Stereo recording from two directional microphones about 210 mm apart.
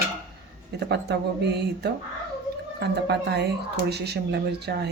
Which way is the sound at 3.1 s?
50° right (ahead or behind).